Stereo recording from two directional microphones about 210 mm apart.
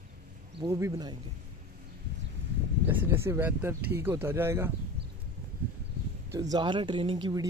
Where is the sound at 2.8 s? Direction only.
10° right (ahead or behind).